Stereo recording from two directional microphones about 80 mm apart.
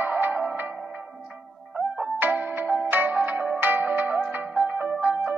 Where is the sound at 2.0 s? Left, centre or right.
Right.